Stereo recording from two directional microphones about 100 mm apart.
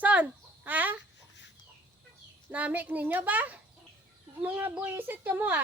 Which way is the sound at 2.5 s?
15° right (ahead or behind).